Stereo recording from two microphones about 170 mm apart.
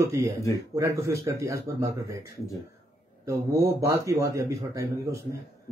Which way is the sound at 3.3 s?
15° right (ahead or behind).